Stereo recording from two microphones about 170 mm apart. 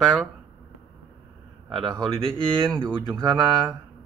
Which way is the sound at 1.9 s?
30° right (ahead or behind).